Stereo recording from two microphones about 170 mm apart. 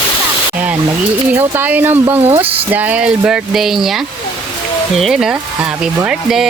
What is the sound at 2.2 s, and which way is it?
Speech, 35° right (ahead or behind).